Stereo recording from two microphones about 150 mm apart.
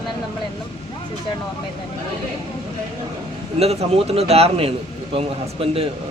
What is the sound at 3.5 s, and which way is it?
A man's voice, 45° right (ahead or behind).